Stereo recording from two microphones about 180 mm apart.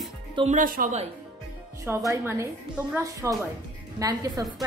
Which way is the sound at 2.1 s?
15° right (ahead or behind).